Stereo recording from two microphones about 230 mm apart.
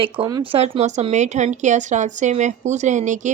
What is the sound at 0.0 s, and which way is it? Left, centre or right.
A woman's voice, right.